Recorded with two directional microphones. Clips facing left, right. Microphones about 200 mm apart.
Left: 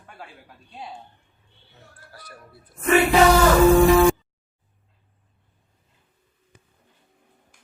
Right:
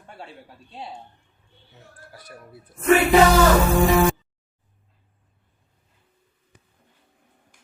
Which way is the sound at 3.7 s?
Centre (ahead or behind).